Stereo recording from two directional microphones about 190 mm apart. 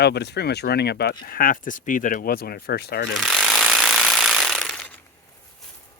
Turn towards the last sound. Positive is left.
turn(degrees=5)  # may be behind; listen again after turning